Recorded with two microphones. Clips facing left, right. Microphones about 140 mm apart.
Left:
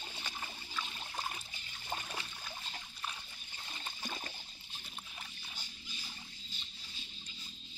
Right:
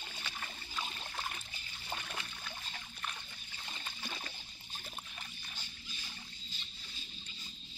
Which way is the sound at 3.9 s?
25° left (ahead or behind).